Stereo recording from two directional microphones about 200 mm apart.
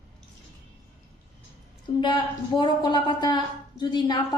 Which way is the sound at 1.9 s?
25° left (ahead or behind).